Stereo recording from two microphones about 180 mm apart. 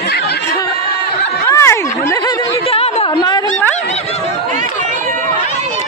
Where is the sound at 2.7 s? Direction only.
30° left (ahead or behind).